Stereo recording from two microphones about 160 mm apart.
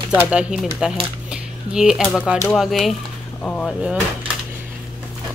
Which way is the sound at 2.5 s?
Centre (ahead or behind).